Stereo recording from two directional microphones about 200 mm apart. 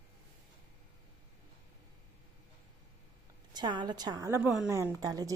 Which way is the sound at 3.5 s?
20° right (ahead or behind).